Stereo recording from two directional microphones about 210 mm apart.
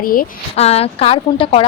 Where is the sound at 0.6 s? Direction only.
30° left (ahead or behind).